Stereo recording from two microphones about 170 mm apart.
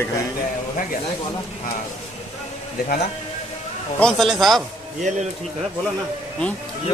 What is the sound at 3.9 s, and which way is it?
Speech, centre (ahead or behind).